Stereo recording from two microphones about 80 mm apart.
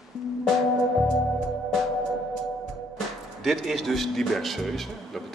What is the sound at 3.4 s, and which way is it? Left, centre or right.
A man's voice, centre.